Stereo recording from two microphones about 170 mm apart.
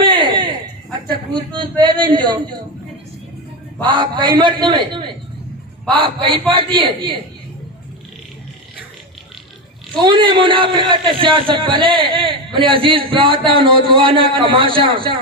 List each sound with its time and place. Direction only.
0.0 s a sound: 30° right (ahead or behind)
1.8 s a man's voice: 25° right (ahead or behind)
3.8 s a man's voice: 25° right (ahead or behind)
10.0 s a man's voice: 30° right (ahead or behind)